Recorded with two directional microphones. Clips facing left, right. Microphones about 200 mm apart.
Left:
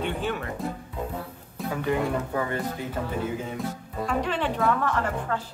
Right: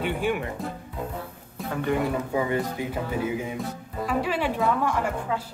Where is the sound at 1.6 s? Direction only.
Centre (ahead or behind).